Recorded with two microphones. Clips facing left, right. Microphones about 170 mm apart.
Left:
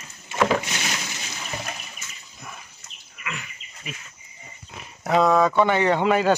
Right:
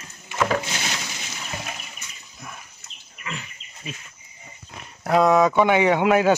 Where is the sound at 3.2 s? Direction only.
30° right (ahead or behind).